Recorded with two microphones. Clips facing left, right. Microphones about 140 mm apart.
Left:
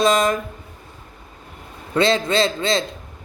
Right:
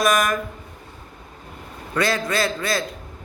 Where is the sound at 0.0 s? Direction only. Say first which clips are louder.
Left 3 dB; 25° left (ahead or behind).